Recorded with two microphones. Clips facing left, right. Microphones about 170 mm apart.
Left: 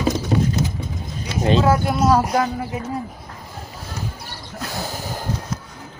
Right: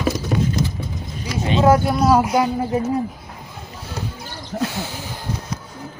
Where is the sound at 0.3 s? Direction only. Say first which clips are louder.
Left 2 dB; 30° left (ahead or behind).